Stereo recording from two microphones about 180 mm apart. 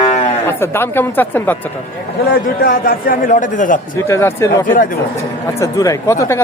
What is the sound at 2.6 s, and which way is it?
Speech, 50° left (ahead or behind).